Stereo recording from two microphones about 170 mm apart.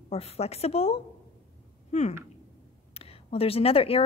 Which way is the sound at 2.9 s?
35° left (ahead or behind).